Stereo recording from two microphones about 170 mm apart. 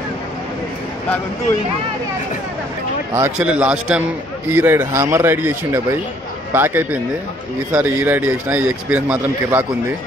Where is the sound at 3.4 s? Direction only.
5° right (ahead or behind).